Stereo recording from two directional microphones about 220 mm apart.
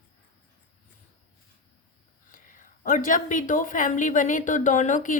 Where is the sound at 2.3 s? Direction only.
35° left (ahead or behind).